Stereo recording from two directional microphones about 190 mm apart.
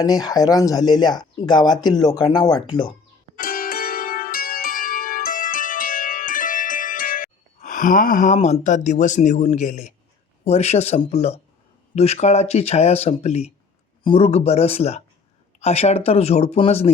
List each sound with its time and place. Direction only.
0.0 s speech: 20° left (ahead or behind)
3.3 s zither: 50° left (ahead or behind)
10.4 s speech: 35° left (ahead or behind)